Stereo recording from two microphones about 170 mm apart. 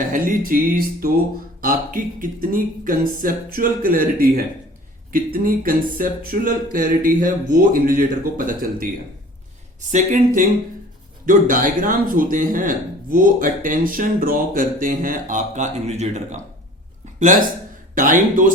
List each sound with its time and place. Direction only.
0.0 s a sound: 50° right (ahead or behind)
1.6 s speech: 50° right (ahead or behind)
9.9 s speech: 50° right (ahead or behind)
17.9 s speech: 50° right (ahead or behind)